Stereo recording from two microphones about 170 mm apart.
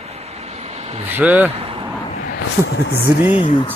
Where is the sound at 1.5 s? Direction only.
35° right (ahead or behind).